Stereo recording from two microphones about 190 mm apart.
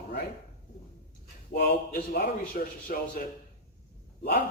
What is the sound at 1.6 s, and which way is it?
A man's voice, 55° left (ahead or behind).